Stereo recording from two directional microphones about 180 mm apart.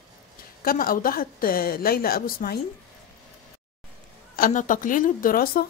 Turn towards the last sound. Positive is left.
turn(degrees=55)  # may be behind; listen again after turning